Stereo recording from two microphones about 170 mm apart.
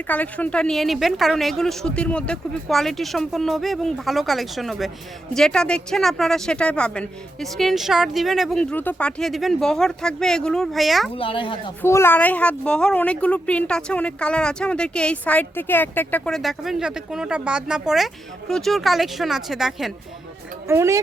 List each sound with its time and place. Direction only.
0.1 s a woman's voice: 10° left (ahead or behind)
8.7 s a woman's voice: 10° left (ahead or behind)
11.1 s speech: 30° left (ahead or behind)
11.8 s a woman's voice: 15° left (ahead or behind); by 19.9 s centre (ahead or behind)
20.7 s speech: 15° right (ahead or behind)